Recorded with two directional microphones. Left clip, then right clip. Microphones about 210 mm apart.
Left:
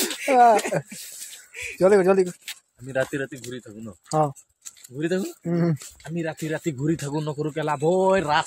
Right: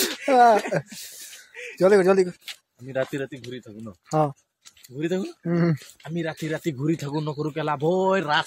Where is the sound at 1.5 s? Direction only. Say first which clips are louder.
Left 4 dB; 65° left (ahead or behind).